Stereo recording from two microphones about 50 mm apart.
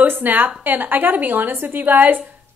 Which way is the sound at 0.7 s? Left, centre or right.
Right.